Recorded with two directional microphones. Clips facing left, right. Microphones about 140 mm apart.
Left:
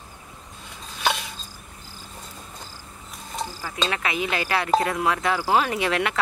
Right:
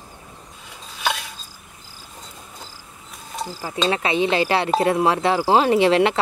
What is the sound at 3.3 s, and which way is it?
Mechanisms, 10° right (ahead or behind).